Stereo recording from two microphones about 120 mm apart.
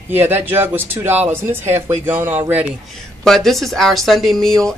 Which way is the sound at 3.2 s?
Centre (ahead or behind).